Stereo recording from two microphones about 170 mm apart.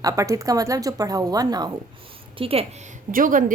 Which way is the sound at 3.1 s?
50° right (ahead or behind).